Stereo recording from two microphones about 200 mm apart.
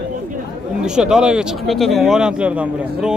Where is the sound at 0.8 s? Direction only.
5° right (ahead or behind).